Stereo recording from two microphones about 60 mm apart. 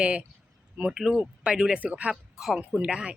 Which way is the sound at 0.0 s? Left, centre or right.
Centre.